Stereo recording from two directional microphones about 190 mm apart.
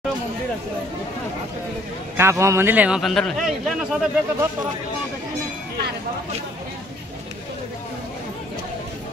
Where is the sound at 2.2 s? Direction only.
15° right (ahead or behind).